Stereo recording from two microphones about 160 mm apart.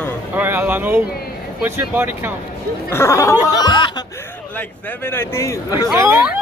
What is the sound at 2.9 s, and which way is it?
Speech, 15° left (ahead or behind).